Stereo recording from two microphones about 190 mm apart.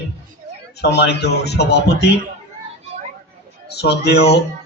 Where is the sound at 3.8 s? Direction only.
60° left (ahead or behind).